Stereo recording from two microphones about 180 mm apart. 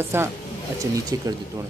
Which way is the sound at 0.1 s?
15° right (ahead or behind).